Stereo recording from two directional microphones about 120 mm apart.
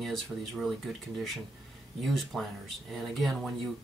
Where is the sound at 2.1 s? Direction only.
Centre (ahead or behind).